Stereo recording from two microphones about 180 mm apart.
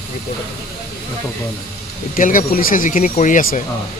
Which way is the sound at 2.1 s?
50° left (ahead or behind).